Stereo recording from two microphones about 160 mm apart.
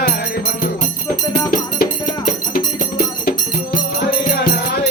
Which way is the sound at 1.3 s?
65° left (ahead or behind).